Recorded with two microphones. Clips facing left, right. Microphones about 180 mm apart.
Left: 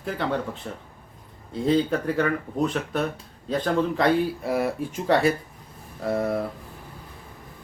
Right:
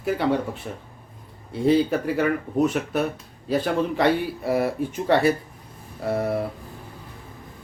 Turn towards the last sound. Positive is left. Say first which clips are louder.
# right 1 dB
turn(degrees=-5)  # may be behind; listen again after turning